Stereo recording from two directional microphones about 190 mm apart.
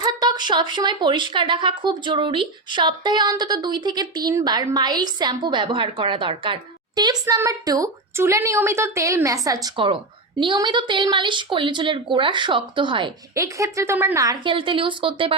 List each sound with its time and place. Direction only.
0.0 s a woman's voice: 25° right (ahead or behind)